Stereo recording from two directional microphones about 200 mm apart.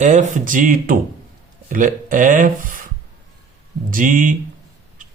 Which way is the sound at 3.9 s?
40° right (ahead or behind).